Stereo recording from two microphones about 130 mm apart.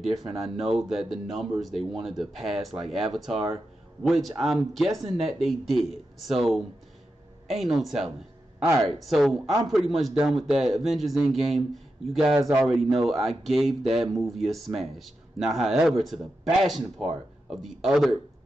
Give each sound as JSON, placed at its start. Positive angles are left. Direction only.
{"t": 0.0, "sound": "speech", "side_deg": 0}
{"t": 12.4, "sound": "a man's voice", "side_deg": -25}
{"t": 12.6, "sound": "speech", "side_deg": 0}